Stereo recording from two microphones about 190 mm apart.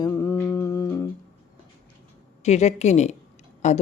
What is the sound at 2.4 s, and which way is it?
A woman's voice, 35° left (ahead or behind).